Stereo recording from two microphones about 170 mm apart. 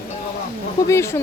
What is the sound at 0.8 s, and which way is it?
Speech, 15° left (ahead or behind).